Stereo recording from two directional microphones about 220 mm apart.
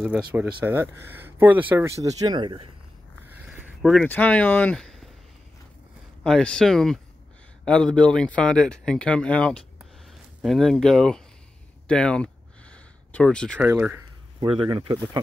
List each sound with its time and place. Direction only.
0.0 s speech: 5° right (ahead or behind); by 2.7 s 20° right (ahead or behind)
3.3 s a sound: 5° right (ahead or behind)
6.2 s speech: 5° left (ahead or behind)
13.6 s speech: 5° right (ahead or behind)
14.4 s speech: 20° right (ahead or behind)